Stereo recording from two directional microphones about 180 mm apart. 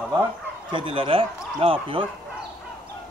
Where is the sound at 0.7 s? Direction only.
30° right (ahead or behind).